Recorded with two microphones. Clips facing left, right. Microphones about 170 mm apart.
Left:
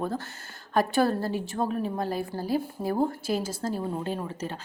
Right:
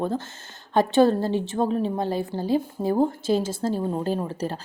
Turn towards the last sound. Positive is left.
turn(degrees=-35)  # may be behind; listen again after turning